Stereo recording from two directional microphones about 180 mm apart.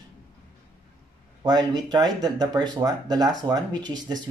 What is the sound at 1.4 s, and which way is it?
Speech, 25° right (ahead or behind).